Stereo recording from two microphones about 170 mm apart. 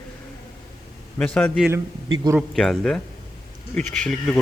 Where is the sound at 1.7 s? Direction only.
20° right (ahead or behind).